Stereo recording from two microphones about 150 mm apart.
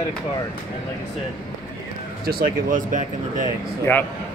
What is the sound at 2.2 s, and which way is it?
Speech, 85° right.